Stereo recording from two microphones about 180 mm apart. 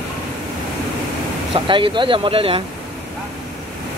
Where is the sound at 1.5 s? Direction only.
30° right (ahead or behind).